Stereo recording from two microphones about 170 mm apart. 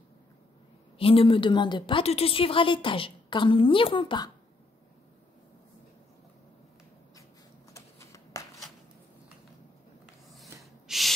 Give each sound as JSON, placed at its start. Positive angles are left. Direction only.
{"t": 0.9, "sound": "a woman's voice", "side_deg": 35}
{"t": 7.7, "sound": "shuffling cards", "side_deg": 15}
{"t": 10.6, "sound": "rub", "side_deg": 0}